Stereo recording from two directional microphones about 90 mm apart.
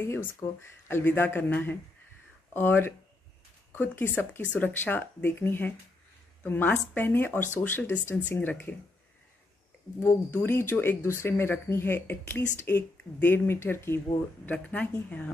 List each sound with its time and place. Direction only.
0.0 s speech: 30° left (ahead or behind)
10.0 s speech: 25° left (ahead or behind)
14.5 s speech: 15° left (ahead or behind)